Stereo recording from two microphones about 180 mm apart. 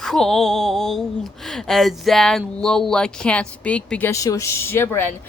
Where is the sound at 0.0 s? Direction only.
Centre (ahead or behind).